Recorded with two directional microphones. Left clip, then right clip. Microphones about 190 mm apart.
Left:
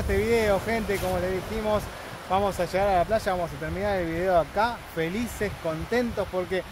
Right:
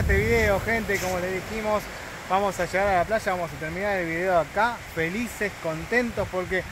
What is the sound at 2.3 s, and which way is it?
Speech, 5° left (ahead or behind).